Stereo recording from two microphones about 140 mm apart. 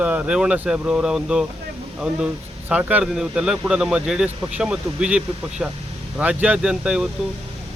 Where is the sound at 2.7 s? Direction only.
10° right (ahead or behind).